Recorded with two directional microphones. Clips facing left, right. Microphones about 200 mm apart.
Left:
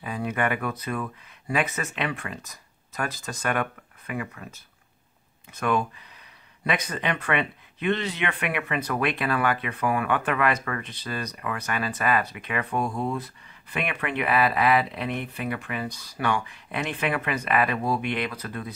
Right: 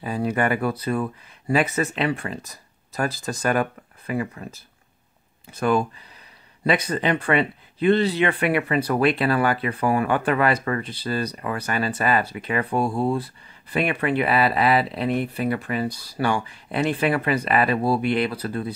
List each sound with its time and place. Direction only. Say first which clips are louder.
0.0 s speech: right 4 dB; 30° right (ahead or behind)